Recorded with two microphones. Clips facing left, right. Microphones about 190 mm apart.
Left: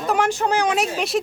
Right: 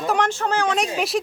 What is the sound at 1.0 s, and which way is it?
Speech, centre (ahead or behind).